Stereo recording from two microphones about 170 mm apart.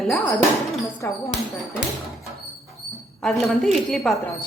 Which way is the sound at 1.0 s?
15° left (ahead or behind).